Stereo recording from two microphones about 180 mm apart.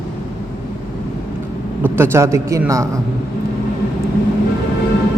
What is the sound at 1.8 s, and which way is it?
A man's voice, 15° right (ahead or behind).